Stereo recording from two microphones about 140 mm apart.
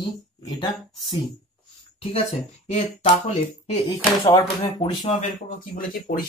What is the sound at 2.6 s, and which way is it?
Speech, 45° left (ahead or behind).